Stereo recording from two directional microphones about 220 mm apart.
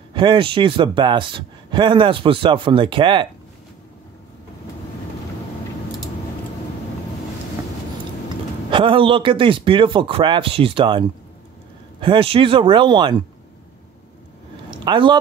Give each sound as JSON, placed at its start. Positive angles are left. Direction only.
{"t": 0.1, "sound": "speech", "side_deg": -20}
{"t": 8.6, "sound": "speech", "side_deg": -20}
{"t": 14.9, "sound": "speech", "side_deg": -20}